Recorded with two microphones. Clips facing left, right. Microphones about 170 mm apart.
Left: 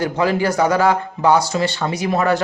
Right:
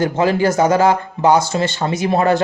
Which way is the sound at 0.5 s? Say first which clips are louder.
Right 2 dB; 20° right (ahead or behind).